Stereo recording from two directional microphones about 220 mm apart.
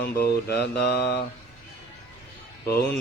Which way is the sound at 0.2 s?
45° left (ahead or behind).